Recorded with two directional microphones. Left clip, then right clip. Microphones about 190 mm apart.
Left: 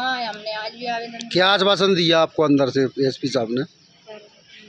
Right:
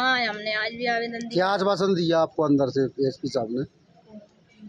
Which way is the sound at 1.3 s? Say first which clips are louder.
Left 6 dB; 30° left (ahead or behind).